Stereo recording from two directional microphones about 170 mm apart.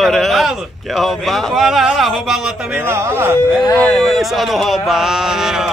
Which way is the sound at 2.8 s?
15° right (ahead or behind).